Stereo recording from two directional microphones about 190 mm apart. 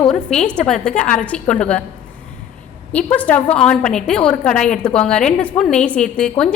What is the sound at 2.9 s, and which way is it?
A woman's voice, 10° left (ahead or behind).